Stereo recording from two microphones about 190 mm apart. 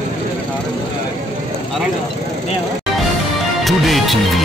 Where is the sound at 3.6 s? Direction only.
Centre (ahead or behind).